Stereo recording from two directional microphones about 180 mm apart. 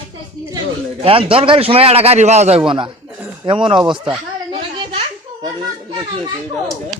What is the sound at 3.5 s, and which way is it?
Speech, 30° right (ahead or behind).